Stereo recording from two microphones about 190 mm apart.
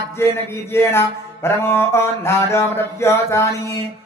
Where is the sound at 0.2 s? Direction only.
15° left (ahead or behind).